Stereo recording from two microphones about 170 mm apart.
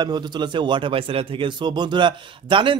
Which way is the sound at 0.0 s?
25° right (ahead or behind).